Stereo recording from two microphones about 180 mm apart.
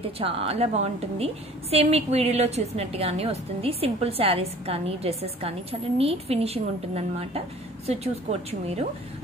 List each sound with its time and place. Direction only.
0.2 s a woman's voice: 30° right (ahead or behind)